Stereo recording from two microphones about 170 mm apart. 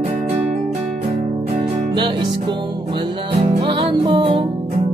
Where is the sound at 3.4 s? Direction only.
30° right (ahead or behind).